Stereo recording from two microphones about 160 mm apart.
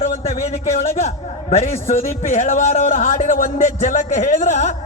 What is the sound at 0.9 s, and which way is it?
A man's voice, 40° left (ahead or behind).